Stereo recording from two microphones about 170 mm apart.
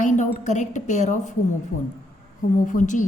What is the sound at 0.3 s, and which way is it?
A woman's voice, 45° left (ahead or behind).